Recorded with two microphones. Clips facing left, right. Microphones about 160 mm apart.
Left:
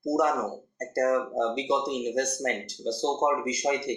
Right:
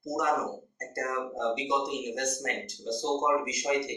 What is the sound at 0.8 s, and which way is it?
Speech, 35° left (ahead or behind).